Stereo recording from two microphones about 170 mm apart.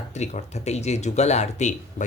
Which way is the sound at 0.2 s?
40° left (ahead or behind).